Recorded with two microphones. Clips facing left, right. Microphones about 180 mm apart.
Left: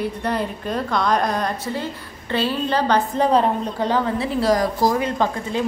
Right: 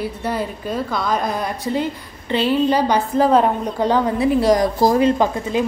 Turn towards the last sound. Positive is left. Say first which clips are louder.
# right 3 dB
turn(degrees=-15)  # may be behind; listen again after turning